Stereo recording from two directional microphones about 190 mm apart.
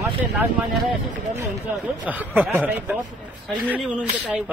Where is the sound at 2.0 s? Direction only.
10° right (ahead or behind).